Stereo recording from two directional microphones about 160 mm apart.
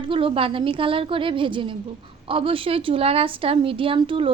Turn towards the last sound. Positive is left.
turn(degrees=-35)  # may be behind; listen again after turning